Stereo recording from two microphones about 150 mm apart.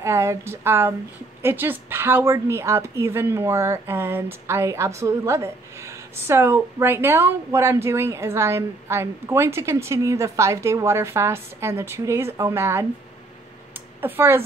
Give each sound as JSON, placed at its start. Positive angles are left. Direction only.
{"t": 0.0, "sound": "speech", "side_deg": -20}
{"t": 14.0, "sound": "speech", "side_deg": -15}